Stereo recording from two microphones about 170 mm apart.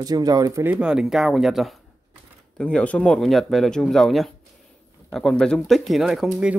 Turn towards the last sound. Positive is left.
turn(degrees=-5)  # may be behind; listen again after turning